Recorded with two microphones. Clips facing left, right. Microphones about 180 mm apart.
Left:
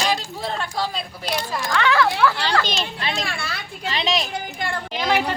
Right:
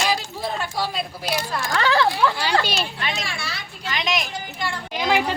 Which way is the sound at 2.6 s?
10° right (ahead or behind).